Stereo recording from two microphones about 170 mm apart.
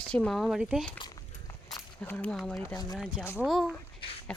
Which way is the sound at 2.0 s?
5° left (ahead or behind).